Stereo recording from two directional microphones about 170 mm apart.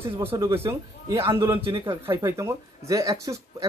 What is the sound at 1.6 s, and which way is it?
Speech, 30° right (ahead or behind).